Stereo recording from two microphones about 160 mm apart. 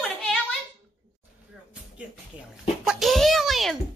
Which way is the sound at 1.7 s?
5° right (ahead or behind).